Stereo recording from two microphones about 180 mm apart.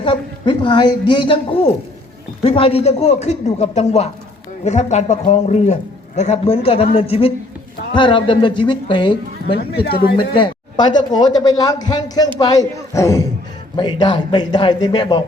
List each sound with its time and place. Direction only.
0.0 s a man's voice: 30° left (ahead or behind)
9.8 s speech: 60° left (ahead or behind)
10.2 s a man's voice: 25° left (ahead or behind)